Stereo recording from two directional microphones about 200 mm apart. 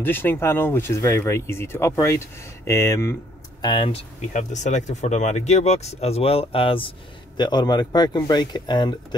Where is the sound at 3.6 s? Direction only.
25° left (ahead or behind).